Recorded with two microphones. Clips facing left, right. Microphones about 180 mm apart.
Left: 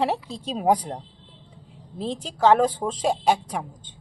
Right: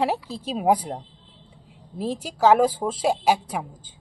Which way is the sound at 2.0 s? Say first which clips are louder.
Right 1 dB; 10° right (ahead or behind).